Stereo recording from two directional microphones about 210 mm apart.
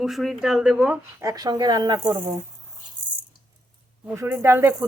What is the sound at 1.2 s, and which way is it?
Speech, 20° right (ahead or behind).